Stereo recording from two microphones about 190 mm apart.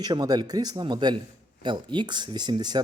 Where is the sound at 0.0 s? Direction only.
20° right (ahead or behind).